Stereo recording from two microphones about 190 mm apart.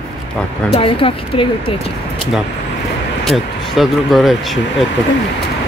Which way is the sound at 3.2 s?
Centre (ahead or behind).